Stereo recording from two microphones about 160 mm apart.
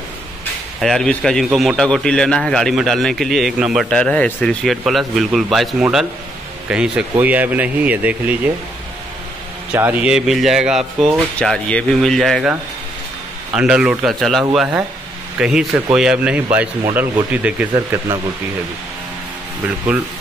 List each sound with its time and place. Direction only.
0.7 s a man's voice: 5° left (ahead or behind)
9.7 s a man's voice: 10° right (ahead or behind)
13.6 s a man's voice: 5° right (ahead or behind)
17.7 s speech: 25° right (ahead or behind)